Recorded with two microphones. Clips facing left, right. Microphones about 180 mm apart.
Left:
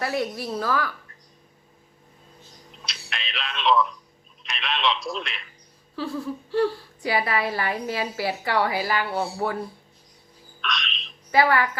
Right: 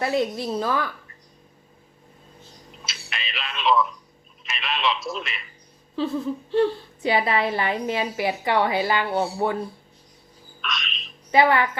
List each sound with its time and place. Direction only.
0.0 s a woman's voice: 20° right (ahead or behind)
1.1 s a sound: centre (ahead or behind)
2.8 s a man's voice: centre (ahead or behind)
6.0 s a woman's voice: 20° right (ahead or behind)
10.6 s a man's voice: centre (ahead or behind)
11.3 s a woman's voice: 20° right (ahead or behind)